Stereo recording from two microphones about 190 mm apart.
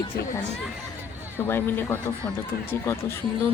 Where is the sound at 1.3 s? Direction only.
10° left (ahead or behind).